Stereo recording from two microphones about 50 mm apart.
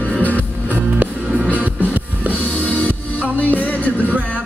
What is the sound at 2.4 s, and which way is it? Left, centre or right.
Music, left.